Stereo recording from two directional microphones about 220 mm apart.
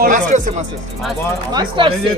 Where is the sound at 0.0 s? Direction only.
35° right (ahead or behind).